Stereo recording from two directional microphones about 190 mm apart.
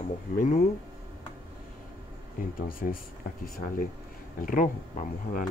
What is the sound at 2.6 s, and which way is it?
Speech, 45° left (ahead or behind).